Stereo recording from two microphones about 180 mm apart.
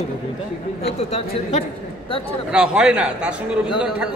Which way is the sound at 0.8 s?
35° left (ahead or behind).